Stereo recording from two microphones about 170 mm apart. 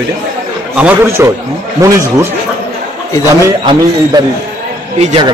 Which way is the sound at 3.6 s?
25° right (ahead or behind).